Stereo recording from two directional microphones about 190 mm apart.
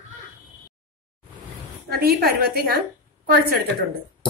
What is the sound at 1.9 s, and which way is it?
Speech, 55° right (ahead or behind).